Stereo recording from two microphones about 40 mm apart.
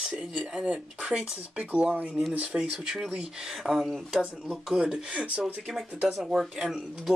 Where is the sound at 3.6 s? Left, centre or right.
Centre.